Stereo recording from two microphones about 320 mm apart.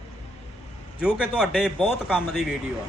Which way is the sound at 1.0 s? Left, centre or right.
Centre.